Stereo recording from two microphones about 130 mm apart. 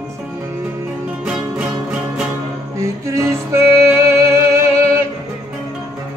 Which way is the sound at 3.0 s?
20° right (ahead or behind).